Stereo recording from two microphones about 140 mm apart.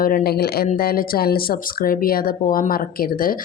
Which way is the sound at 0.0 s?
90° left.